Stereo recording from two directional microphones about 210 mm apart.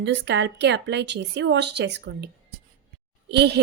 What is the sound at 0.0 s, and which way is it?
A woman's voice, 55° right (ahead or behind).